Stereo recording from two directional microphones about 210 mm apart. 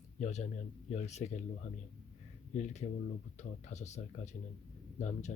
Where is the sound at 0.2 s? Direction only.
35° left (ahead or behind).